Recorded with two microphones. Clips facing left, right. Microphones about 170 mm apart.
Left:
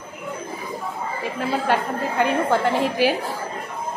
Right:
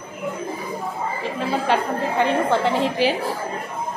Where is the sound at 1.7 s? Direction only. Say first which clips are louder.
Right 1 dB; 5° left (ahead or behind).